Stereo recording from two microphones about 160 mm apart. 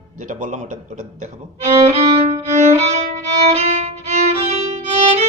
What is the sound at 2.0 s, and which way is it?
Violin, 40° right (ahead or behind).